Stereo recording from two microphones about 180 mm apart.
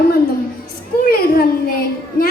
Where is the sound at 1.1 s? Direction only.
55° left (ahead or behind).